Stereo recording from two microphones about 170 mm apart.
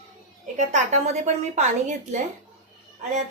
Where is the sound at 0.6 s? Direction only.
45° right (ahead or behind).